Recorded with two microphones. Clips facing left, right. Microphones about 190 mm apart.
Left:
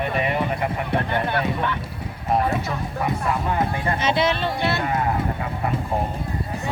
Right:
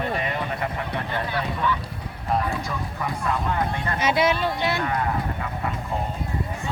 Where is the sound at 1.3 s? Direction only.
60° left (ahead or behind).